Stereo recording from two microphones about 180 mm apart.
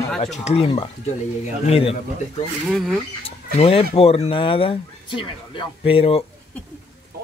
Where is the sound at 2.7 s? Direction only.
Centre (ahead or behind).